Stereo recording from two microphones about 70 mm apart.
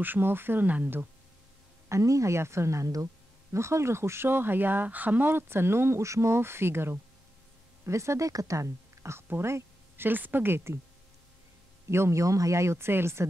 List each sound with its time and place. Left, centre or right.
0.0 s speech: right
1.9 s a woman's voice: right
9.3 s a sound: right
10.0 s speech: right
11.9 s speech: right